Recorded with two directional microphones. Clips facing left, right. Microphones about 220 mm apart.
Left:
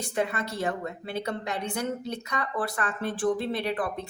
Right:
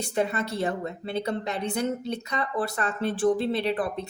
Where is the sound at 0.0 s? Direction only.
25° right (ahead or behind).